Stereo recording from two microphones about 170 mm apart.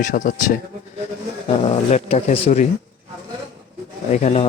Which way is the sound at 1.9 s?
40° left (ahead or behind).